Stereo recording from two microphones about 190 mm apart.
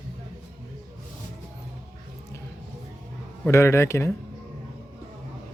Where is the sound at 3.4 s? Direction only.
15° left (ahead or behind).